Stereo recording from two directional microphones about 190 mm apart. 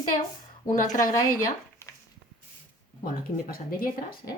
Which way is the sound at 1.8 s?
15° left (ahead or behind).